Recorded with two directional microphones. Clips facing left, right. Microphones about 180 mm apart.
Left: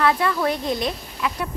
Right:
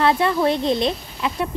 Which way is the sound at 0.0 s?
25° right (ahead or behind).